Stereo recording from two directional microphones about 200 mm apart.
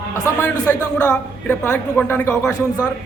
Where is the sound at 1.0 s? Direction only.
5° left (ahead or behind).